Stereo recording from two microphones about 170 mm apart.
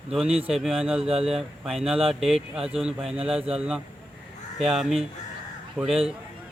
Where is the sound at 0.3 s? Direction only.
35° right (ahead or behind).